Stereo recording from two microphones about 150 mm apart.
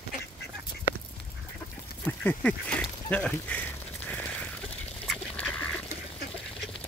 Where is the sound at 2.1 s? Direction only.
10° left (ahead or behind).